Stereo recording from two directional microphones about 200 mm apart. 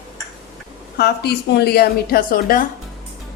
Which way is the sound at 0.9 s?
55° left (ahead or behind).